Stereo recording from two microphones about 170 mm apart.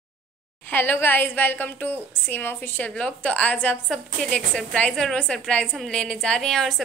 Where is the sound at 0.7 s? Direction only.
10° left (ahead or behind).